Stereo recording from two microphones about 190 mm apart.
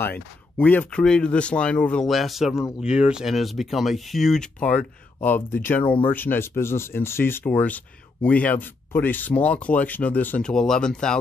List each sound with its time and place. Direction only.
0.0 s speech: 10° left (ahead or behind)